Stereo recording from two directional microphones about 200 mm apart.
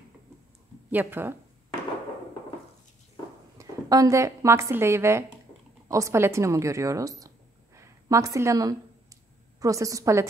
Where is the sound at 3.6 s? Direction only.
15° right (ahead or behind).